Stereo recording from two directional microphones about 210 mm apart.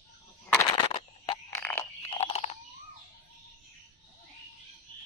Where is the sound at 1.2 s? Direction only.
15° left (ahead or behind).